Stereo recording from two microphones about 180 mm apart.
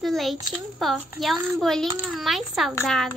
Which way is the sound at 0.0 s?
Centre (ahead or behind).